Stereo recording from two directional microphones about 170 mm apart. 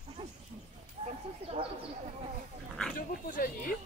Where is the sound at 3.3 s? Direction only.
55° left (ahead or behind).